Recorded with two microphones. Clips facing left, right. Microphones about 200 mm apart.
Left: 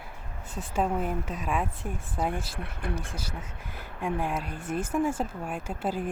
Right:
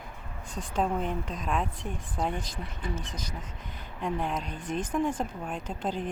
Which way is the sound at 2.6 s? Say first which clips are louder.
Left 2 dB; 60° left (ahead or behind).